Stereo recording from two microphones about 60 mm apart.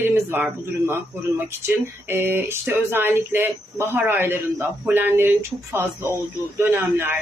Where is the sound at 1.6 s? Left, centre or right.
Right.